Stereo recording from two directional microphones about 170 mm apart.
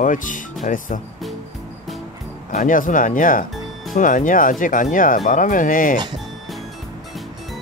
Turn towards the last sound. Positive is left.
turn(degrees=50)  # may be behind; listen again after turning